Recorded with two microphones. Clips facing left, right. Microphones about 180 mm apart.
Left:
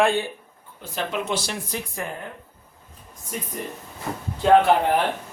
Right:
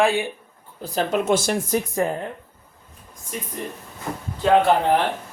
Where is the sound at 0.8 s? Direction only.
40° right (ahead or behind).